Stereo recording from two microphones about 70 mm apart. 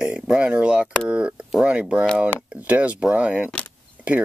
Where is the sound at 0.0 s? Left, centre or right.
Centre.